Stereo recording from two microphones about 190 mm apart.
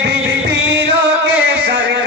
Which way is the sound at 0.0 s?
60° right (ahead or behind).